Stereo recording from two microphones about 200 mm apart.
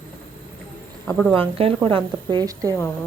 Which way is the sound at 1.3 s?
30° right (ahead or behind).